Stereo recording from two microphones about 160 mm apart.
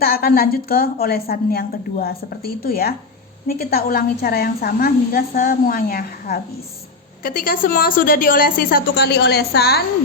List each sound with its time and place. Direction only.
0.0 s a woman's voice: 75° left (ahead or behind)
7.2 s a woman's voice: 60° left (ahead or behind); by 9.8 s 80° left